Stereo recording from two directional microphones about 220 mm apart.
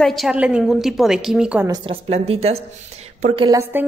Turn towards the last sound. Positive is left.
turn(degrees=-10)  # may be behind; listen again after turning